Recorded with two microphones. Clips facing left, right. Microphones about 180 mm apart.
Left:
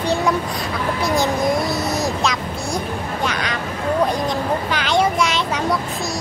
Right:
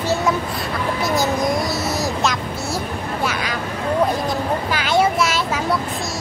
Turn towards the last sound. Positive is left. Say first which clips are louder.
# even
turn(degrees=-5)  # may be behind; listen again after turning